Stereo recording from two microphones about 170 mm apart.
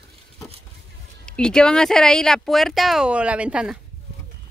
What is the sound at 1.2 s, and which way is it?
Speech, 5° left (ahead or behind).